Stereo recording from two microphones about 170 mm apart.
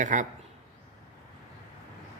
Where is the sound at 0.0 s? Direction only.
45° right (ahead or behind).